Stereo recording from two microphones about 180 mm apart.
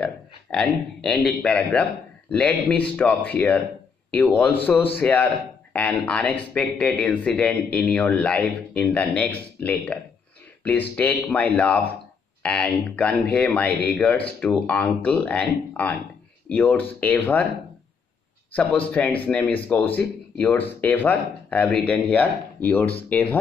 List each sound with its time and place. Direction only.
0.0 s a man's voice: 5° left (ahead or behind)
11.0 s a man's voice: 10° left (ahead or behind)
18.5 s a man's voice: 5° left (ahead or behind)